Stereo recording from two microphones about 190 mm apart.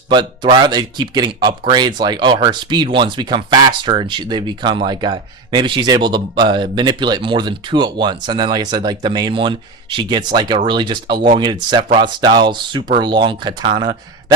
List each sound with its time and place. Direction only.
0.1 s speech: 25° right (ahead or behind)